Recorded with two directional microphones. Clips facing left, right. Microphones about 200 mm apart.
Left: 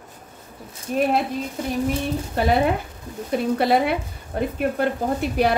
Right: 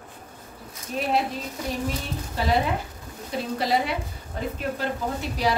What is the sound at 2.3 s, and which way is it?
Speech, 55° left (ahead or behind).